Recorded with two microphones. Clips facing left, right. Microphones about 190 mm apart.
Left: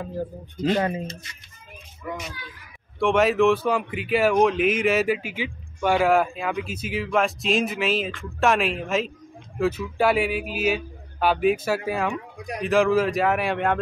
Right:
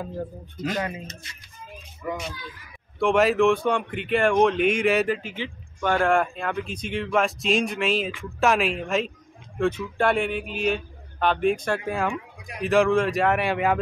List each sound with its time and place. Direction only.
0.7 s speech: 40° left (ahead or behind)
3.0 s speech: centre (ahead or behind)